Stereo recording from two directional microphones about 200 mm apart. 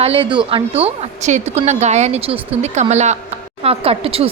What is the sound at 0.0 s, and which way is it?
A woman's voice, 30° right (ahead or behind).